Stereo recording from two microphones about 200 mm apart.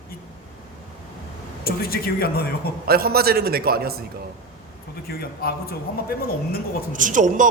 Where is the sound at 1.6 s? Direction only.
50° left (ahead or behind).